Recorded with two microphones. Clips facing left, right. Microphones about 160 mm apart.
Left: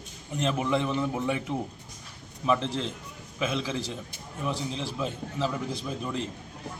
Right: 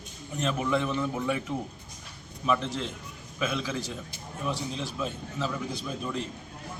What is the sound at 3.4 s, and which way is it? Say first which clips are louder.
Speech: left 1 dB; 30° left (ahead or behind).